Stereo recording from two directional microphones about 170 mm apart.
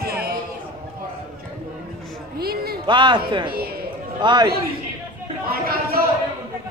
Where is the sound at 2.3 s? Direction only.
65° right (ahead or behind).